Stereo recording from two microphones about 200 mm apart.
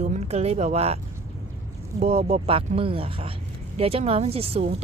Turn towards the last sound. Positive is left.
turn(degrees=-30)  # may be behind; listen again after turning